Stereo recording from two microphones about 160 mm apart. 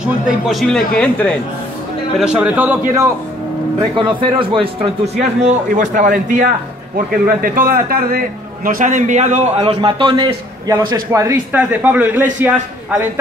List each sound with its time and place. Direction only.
0.0 s speech: centre (ahead or behind)
2.1 s a man's voice: 5° right (ahead or behind)
3.9 s speech: 30° right (ahead or behind)
5.4 s a man's voice: 50° right (ahead or behind); by 12.5 s 10° right (ahead or behind)